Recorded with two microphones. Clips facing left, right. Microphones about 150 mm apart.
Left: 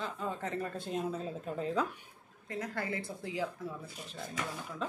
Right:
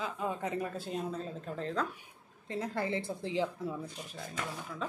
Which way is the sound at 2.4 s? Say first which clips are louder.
Right 3 dB; 30° right (ahead or behind).